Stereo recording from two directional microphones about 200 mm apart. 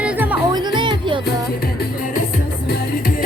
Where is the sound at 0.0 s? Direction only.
5° right (ahead or behind).